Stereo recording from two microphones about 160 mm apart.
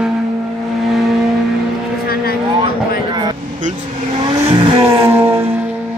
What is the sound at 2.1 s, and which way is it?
Vehicle, 70° left (ahead or behind).